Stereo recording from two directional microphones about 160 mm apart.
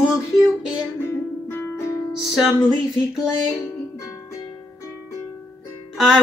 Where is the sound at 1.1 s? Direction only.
15° left (ahead or behind).